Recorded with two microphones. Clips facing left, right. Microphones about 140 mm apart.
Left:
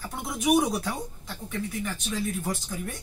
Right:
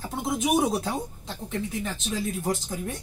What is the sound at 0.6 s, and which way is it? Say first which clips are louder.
Speech: right 1 dB; 25° right (ahead or behind).